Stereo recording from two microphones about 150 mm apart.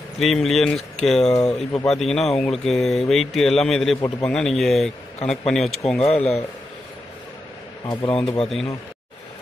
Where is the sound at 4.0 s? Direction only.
30° left (ahead or behind).